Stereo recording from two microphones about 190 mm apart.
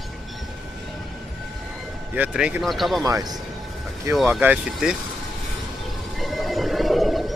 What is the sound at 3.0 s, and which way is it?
Speech, 20° right (ahead or behind).